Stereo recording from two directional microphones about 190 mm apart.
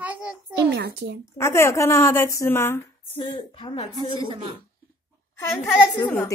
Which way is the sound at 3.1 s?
30° left (ahead or behind).